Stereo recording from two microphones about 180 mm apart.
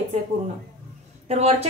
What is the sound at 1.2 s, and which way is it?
Speech, 35° right (ahead or behind).